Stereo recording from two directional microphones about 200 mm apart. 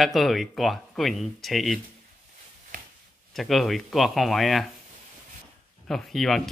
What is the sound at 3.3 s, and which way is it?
Speech, centre (ahead or behind).